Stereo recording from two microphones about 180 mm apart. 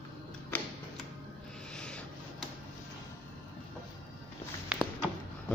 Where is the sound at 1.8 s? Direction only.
5° left (ahead or behind).